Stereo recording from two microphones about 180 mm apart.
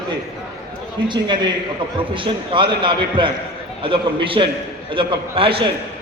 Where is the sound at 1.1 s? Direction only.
25° right (ahead or behind).